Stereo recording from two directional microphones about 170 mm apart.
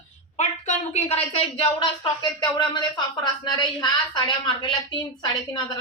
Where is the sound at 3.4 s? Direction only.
25° left (ahead or behind).